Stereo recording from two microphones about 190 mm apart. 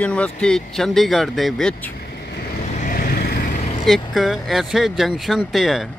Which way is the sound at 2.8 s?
45° left (ahead or behind).